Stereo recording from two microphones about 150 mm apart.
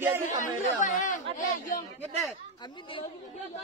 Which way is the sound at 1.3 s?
65° left (ahead or behind).